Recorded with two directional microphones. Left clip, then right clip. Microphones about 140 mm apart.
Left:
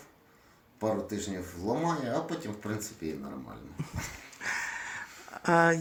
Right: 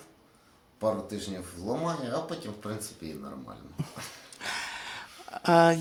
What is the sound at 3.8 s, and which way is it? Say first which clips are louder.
Dog: right 3 dB; 40° right (ahead or behind).